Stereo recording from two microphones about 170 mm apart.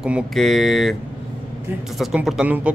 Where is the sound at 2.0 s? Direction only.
Centre (ahead or behind).